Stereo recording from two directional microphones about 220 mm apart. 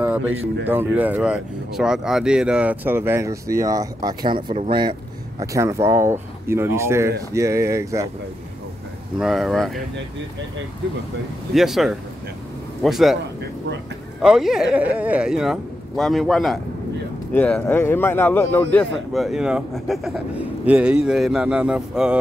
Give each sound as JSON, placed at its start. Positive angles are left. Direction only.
{"t": 0.2, "sound": "speech", "side_deg": -60}
{"t": 0.7, "sound": "speech", "side_deg": -10}
{"t": 9.2, "sound": "a man's voice", "side_deg": 0}
{"t": 11.5, "sound": "a man's voice", "side_deg": 0}
{"t": 14.2, "sound": "a man's voice", "side_deg": 0}